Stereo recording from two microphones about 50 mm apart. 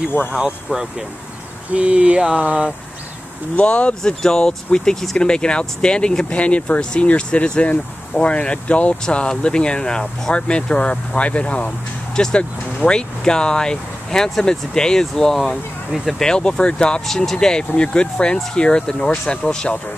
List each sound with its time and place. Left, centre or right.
1.7 s speech: right
3.5 s speech: left; by 16.2 s centre
16.2 s speech: centre
17.0 s speech: centre